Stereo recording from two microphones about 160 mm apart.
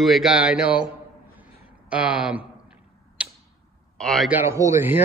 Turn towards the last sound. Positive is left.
turn(degrees=-15)  # may be behind; listen again after turning